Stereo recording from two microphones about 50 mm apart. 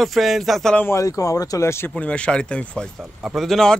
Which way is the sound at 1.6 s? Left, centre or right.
Left.